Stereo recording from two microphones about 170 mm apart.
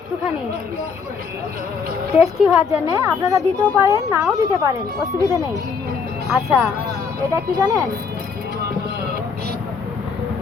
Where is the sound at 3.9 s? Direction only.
20° right (ahead or behind).